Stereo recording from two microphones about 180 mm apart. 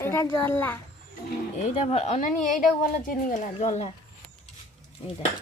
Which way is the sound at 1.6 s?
35° left (ahead or behind).